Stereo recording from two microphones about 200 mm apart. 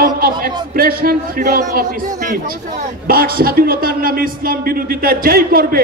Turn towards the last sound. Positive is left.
turn(degrees=-50)  # may be behind; listen again after turning